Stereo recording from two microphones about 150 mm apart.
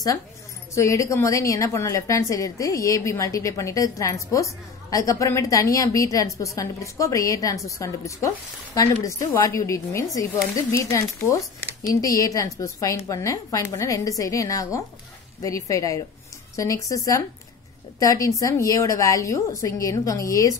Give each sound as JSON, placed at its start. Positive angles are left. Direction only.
{"t": 0.7, "sound": "a woman's voice", "side_deg": 20}